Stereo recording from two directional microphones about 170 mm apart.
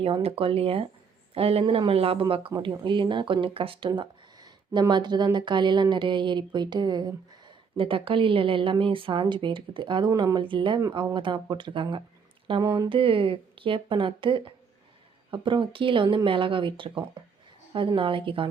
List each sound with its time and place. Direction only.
0.0 s a woman's voice: 35° right (ahead or behind)